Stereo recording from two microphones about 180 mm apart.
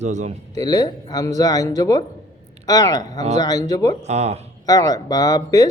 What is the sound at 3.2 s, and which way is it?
Speech, 40° right (ahead or behind).